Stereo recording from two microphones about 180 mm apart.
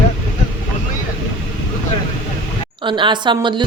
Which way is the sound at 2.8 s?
25° right (ahead or behind).